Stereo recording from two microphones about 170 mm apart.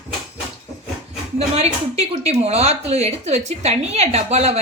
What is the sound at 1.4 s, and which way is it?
Speech, 35° right (ahead or behind).